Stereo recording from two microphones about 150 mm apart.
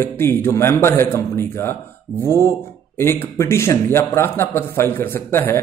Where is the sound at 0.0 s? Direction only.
15° left (ahead or behind).